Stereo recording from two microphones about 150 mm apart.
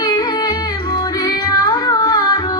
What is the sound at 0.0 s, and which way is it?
Music, 30° left (ahead or behind).